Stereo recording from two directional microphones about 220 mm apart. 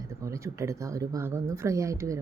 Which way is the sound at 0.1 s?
15° right (ahead or behind).